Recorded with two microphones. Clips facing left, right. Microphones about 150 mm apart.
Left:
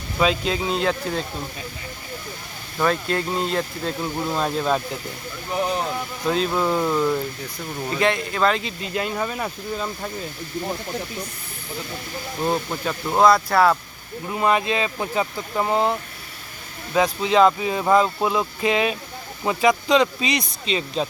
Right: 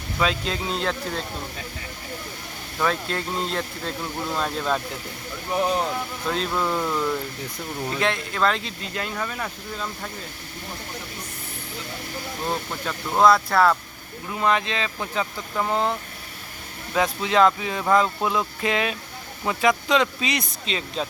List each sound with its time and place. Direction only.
0.2 s speech: 5° left (ahead or behind)
2.8 s speech: centre (ahead or behind)
4.2 s speech: 15° left (ahead or behind)
6.2 s speech: 5° left (ahead or behind)
9.1 s speech: 20° left (ahead or behind)
12.8 s speech: 10° left (ahead or behind)
17.0 s speech: centre (ahead or behind)